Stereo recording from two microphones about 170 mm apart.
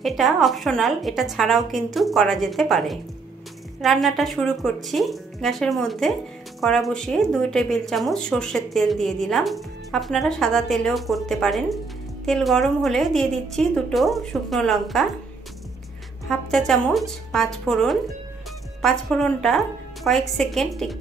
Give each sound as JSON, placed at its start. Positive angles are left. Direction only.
{"t": 0.0, "sound": "speech", "side_deg": 0}
{"t": 16.3, "sound": "speech", "side_deg": 0}